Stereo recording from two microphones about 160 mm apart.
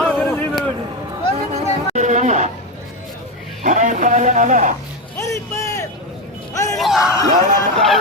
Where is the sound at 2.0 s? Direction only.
50° right (ahead or behind).